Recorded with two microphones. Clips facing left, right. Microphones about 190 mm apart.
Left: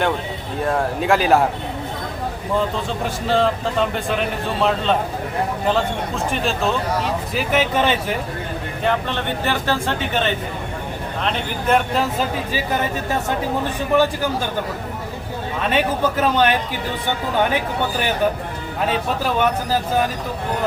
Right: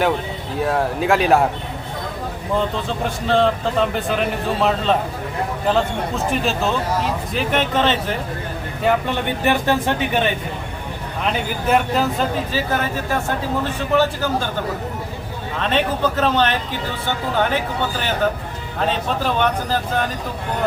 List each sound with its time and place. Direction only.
0.6 s a man's voice: centre (ahead or behind)
2.6 s a man's voice: centre (ahead or behind)
8.8 s a man's voice: 10° right (ahead or behind)
12.5 s speech: 20° left (ahead or behind)
15.6 s speech: 10° left (ahead or behind)
18.8 s speech: 5° left (ahead or behind)